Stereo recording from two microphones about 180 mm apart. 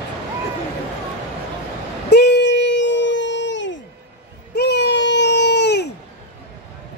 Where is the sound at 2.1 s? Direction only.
70° left (ahead or behind); by 3.7 s 85° left.